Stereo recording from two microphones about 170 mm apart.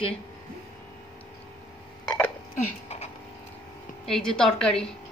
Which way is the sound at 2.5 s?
40° left (ahead or behind).